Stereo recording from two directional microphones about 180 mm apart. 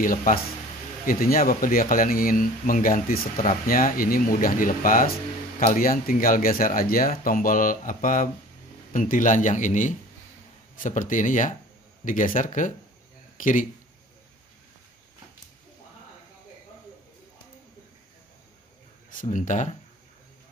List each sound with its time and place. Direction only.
0.0 s speech: 50° left (ahead or behind)
19.1 s speech: 45° left (ahead or behind)